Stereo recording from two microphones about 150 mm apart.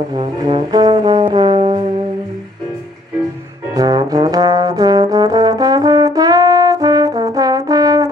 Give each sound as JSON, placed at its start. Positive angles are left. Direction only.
{"t": 0.1, "sound": "brass instrument", "side_deg": -35}
{"t": 3.7, "sound": "brass instrument", "side_deg": -25}